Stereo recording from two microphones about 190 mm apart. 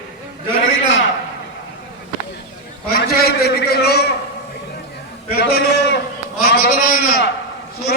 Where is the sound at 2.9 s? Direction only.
55° left (ahead or behind).